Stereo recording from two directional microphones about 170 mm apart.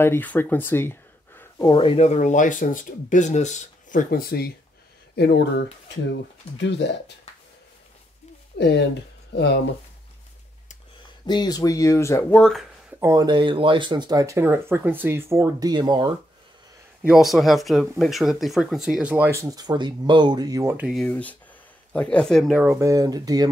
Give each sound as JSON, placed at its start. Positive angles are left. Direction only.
{"t": 0.0, "sound": "speech", "side_deg": 10}
{"t": 1.7, "sound": "speech", "side_deg": 30}
{"t": 4.1, "sound": "speech", "side_deg": 60}
{"t": 5.1, "sound": "speech", "side_deg": 80}
{"t": 8.5, "sound": "speech", "side_deg": 85}
{"t": 11.2, "sound": "speech", "side_deg": 25}
{"t": 12.4, "sound": "speech", "side_deg": 5}
{"t": 13.0, "sound": "speech", "side_deg": -20}
{"t": 17.0, "sound": "speech", "side_deg": -5}
{"t": 19.4, "sound": "speech", "side_deg": -25}
{"t": 20.9, "sound": "speech", "side_deg": 5}
{"t": 22.6, "sound": "speech", "side_deg": -15}